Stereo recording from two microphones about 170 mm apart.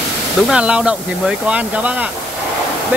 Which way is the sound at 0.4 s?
5° right (ahead or behind).